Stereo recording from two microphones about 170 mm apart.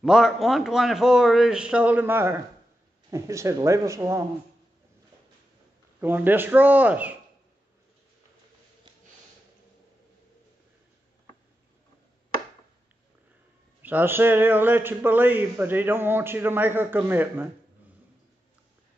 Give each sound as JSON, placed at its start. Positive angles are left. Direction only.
{"t": 0.0, "sound": "a man's voice", "side_deg": 0}
{"t": 5.9, "sound": "a man's voice", "side_deg": -10}
{"t": 13.8, "sound": "a man's voice", "side_deg": -10}